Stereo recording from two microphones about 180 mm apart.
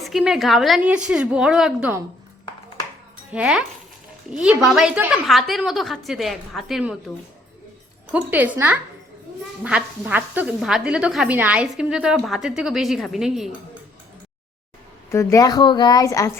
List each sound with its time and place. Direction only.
0.0 s speech: centre (ahead or behind)
3.3 s speech: 5° right (ahead or behind)
8.1 s speech: 10° right (ahead or behind)
15.1 s speech: 15° left (ahead or behind)